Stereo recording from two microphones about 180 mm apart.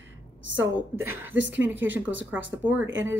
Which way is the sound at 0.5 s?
15° right (ahead or behind).